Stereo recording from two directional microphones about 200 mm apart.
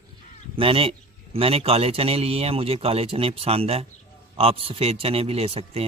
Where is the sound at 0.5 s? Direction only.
25° right (ahead or behind).